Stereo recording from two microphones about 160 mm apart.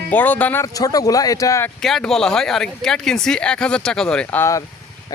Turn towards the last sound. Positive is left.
turn(degrees=15)  # may be behind; listen again after turning